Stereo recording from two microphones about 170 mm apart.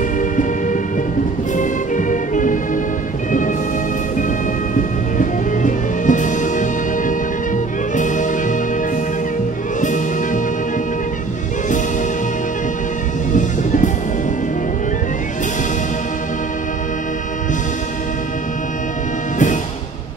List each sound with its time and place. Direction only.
0.2 s music: 50° left (ahead or behind)
4.7 s music: 50° left (ahead or behind)
9.8 s music: 50° left (ahead or behind)
13.3 s music: 50° left (ahead or behind)
19.3 s music: 50° left (ahead or behind)